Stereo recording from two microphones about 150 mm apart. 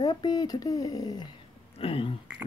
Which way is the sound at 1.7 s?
40° left (ahead or behind).